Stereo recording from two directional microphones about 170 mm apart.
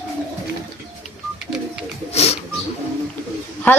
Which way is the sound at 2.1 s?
35° left (ahead or behind).